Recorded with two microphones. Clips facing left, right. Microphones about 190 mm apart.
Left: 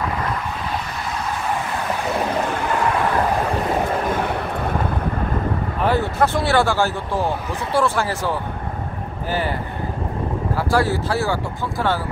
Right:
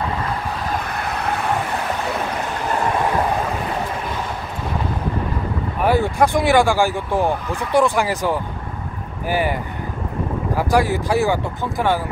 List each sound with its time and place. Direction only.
5.9 s speech: 15° right (ahead or behind)